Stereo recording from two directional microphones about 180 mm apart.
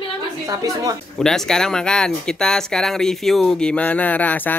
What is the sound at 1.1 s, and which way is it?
Speech, 5° left (ahead or behind).